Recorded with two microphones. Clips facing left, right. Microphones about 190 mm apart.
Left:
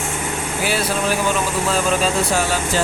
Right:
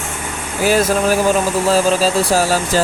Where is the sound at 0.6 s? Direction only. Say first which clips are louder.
Right 8 dB; 45° right (ahead or behind).